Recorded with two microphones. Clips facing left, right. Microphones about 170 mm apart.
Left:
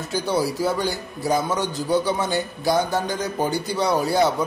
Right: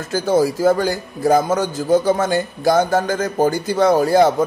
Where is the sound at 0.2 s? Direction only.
45° right (ahead or behind).